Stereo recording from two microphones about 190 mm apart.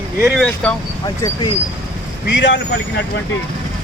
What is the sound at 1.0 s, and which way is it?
Speech, 20° left (ahead or behind).